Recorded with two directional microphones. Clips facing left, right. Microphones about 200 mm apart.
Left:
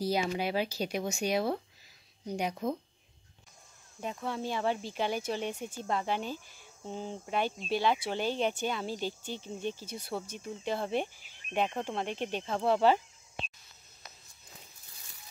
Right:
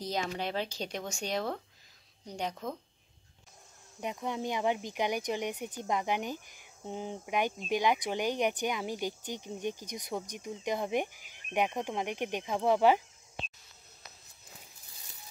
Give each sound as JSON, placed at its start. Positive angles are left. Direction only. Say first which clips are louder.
{"t": 0.0, "sound": "speech", "louder": "left 4 dB", "side_deg": 10}
{"t": 4.0, "sound": "speech", "louder": "right 1 dB", "side_deg": -15}